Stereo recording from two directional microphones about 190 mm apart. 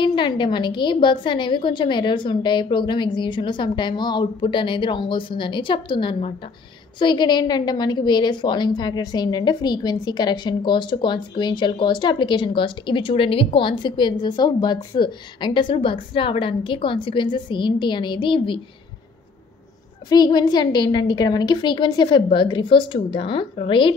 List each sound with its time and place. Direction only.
0.0 s a woman's voice: 25° left (ahead or behind)
20.1 s a woman's voice: 20° left (ahead or behind)